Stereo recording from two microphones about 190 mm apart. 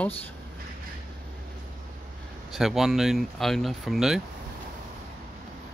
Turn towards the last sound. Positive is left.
turn(degrees=0)  # may be behind; listen again after turning